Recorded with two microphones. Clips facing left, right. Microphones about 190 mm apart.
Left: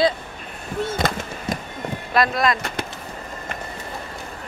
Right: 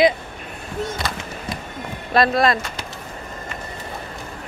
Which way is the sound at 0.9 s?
50° left (ahead or behind).